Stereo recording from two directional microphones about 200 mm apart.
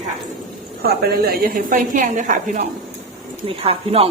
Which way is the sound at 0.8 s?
50° right (ahead or behind).